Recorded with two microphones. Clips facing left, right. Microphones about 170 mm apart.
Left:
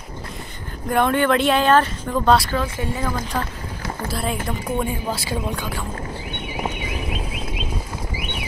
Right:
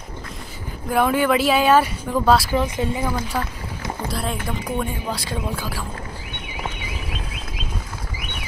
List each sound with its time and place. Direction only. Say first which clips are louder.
0.8 s speech: even; 5° right (ahead or behind)
2.5 s speech: right 3 dB; 20° right (ahead or behind)
4.1 s speech: left 3 dB; centre (ahead or behind)